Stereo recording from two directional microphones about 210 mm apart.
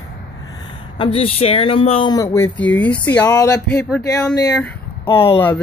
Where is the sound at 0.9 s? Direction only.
25° left (ahead or behind); by 4.4 s 5° left (ahead or behind).